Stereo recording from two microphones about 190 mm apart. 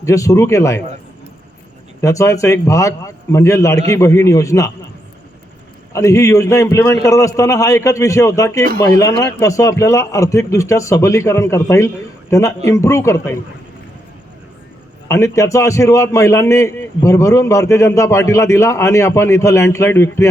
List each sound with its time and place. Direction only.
0.0 s a man's voice: 15° left (ahead or behind)
2.0 s a man's voice: 15° left (ahead or behind)
5.9 s a man's voice: 15° left (ahead or behind)
15.0 s a man's voice: 15° left (ahead or behind)